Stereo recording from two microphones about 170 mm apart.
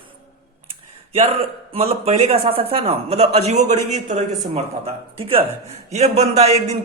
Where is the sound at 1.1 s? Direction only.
35° right (ahead or behind).